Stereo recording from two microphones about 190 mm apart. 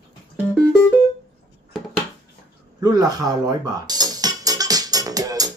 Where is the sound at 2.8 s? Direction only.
20° right (ahead or behind).